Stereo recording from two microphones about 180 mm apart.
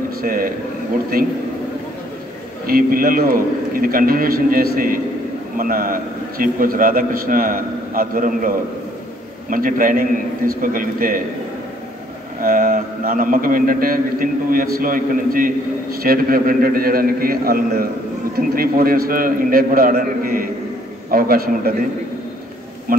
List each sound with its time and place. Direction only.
0.2 s a man's voice: 50° right (ahead or behind)
2.6 s a man's voice: 55° right (ahead or behind)
12.4 s a man's voice: 50° right (ahead or behind)
22.9 s a man's voice: 50° right (ahead or behind)